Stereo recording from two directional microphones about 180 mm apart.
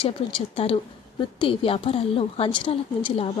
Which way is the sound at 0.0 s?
30° left (ahead or behind).